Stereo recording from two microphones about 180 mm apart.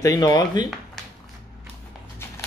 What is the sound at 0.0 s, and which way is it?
Speech, 20° left (ahead or behind).